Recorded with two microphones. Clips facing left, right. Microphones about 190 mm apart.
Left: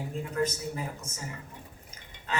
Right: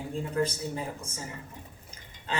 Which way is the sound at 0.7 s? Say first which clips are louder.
Right 2 dB; 30° right (ahead or behind).